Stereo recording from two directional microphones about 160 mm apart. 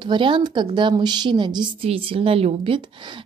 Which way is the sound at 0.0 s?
30° right (ahead or behind).